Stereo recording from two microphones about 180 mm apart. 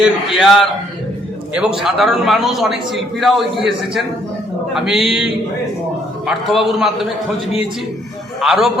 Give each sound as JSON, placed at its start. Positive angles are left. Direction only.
{"t": 0.0, "sound": "a man's voice", "side_deg": 0}
{"t": 8.4, "sound": "a man's voice", "side_deg": 0}